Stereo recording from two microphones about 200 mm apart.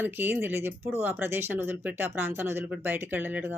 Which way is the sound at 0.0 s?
10° right (ahead or behind).